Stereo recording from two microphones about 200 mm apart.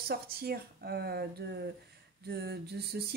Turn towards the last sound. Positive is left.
turn(degrees=-55)  # may be behind; listen again after turning